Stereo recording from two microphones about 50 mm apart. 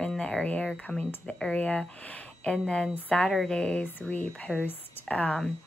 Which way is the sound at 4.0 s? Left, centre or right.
Left.